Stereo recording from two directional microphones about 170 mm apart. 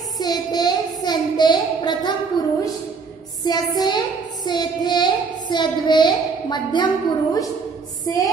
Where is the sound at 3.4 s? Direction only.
25° left (ahead or behind).